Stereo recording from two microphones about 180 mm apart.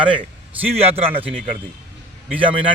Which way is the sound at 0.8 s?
35° right (ahead or behind).